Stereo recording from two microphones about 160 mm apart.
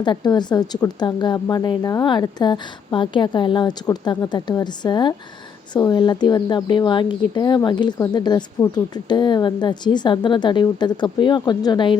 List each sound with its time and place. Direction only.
0.0 s speech: 25° left (ahead or behind)